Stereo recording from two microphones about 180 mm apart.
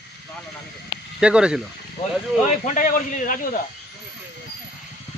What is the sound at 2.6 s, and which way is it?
Speech, 45° left (ahead or behind).